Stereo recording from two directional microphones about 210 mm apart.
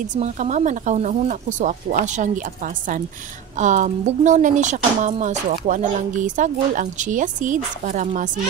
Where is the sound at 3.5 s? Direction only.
35° right (ahead or behind).